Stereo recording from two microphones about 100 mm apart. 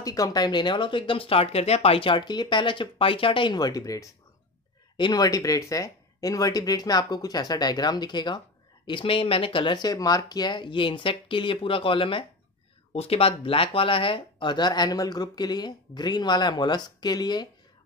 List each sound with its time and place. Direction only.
0.0 s speech: 35° left (ahead or behind); by 3.5 s 60° left (ahead or behind)
3.5 s speech: 40° left (ahead or behind)
8.8 s speech: 60° left (ahead or behind)
12.9 s speech: 90° left
13.4 s speech: 65° left (ahead or behind); by 17.5 s 45° left (ahead or behind)